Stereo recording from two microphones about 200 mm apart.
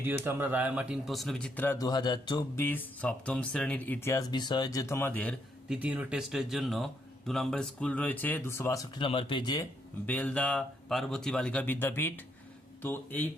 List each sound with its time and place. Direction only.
0.0 s speech: 10° right (ahead or behind); by 2.6 s 20° left (ahead or behind)
2.6 s speech: 10° left (ahead or behind)
5.6 s speech: 5° right (ahead or behind); by 9.0 s 15° left (ahead or behind)
9.0 s speech: 25° left (ahead or behind)
10.1 s speech: 5° left (ahead or behind)